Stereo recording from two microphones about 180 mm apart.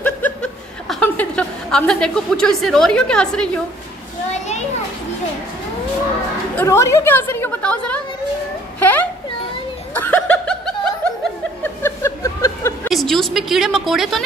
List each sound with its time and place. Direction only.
0.0 s chuckle: 5° left (ahead or behind)
4.3 s children playing: 40° left (ahead or behind)
6.5 s speech: 15° left (ahead or behind)
8.7 s a sound: 10° left (ahead or behind)
9.9 s chuckle: 10° left (ahead or behind)
11.6 s a sound: 15° left (ahead or behind)
12.9 s a woman's voice: centre (ahead or behind)